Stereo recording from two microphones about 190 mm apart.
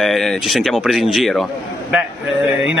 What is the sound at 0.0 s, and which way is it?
Speech, centre (ahead or behind).